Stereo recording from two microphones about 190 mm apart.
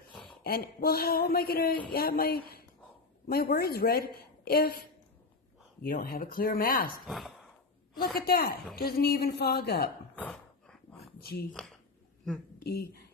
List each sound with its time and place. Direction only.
0.4 s speech: 50° left (ahead or behind)
7.1 s sigh: centre (ahead or behind)
8.0 s speech: 50° left (ahead or behind)
10.1 s dog: 5° left (ahead or behind)
11.0 s a sound: 55° left (ahead or behind)
12.6 s speech: 55° left (ahead or behind)